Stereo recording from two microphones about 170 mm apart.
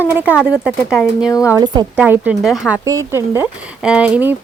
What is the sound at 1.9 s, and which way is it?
Speech, 10° right (ahead or behind).